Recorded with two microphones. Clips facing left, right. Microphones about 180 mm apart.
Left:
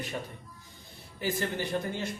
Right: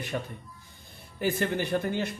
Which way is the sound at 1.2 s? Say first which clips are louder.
Right 4 dB; 60° right (ahead or behind).